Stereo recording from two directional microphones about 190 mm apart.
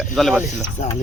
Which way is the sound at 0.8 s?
40° left (ahead or behind).